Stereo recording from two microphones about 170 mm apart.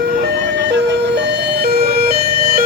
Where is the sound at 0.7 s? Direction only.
80° right; by 2.6 s 60° right (ahead or behind).